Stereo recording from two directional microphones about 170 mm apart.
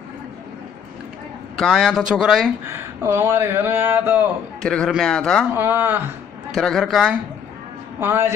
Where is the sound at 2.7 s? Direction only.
15° right (ahead or behind).